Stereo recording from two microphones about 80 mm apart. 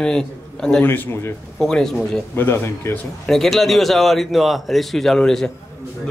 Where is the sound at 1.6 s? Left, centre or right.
Centre.